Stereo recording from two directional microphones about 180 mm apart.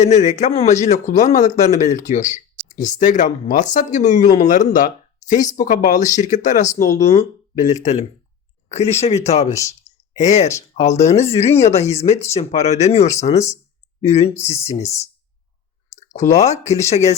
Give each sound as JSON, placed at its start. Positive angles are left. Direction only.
{"t": 0.0, "sound": "a man's voice", "side_deg": 40}